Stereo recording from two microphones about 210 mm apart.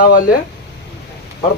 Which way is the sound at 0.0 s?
45° left (ahead or behind).